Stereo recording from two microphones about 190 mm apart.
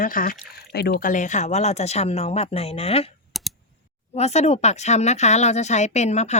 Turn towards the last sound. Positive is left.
turn(degrees=35)  # may be behind; listen again after turning